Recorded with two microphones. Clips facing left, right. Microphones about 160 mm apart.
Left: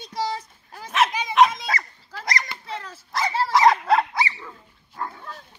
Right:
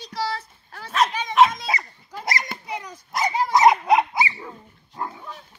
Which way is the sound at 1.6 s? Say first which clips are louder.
Right 1 dB; 20° right (ahead or behind).